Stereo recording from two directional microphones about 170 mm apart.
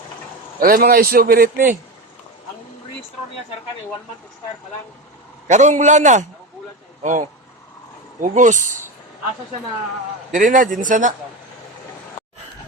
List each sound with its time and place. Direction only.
0.6 s a man's voice: 60° right (ahead or behind)
5.5 s a man's voice: 45° right (ahead or behind)
10.3 s a man's voice: 50° right (ahead or behind)